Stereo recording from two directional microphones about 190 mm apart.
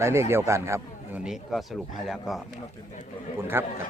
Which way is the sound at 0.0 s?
15° right (ahead or behind).